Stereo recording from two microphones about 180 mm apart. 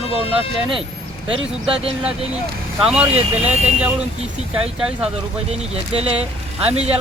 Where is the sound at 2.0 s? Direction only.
5° right (ahead or behind).